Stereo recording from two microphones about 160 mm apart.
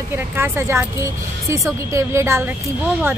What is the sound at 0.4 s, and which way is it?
Speech, 15° right (ahead or behind).